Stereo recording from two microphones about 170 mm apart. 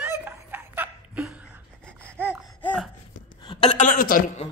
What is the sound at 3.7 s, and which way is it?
Speech, 50° left (ahead or behind).